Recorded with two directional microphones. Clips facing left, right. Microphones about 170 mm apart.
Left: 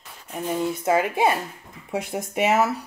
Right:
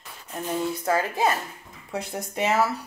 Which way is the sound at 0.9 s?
15° left (ahead or behind).